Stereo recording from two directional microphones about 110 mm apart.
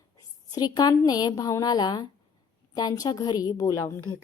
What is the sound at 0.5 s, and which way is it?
A woman's voice, 40° left (ahead or behind).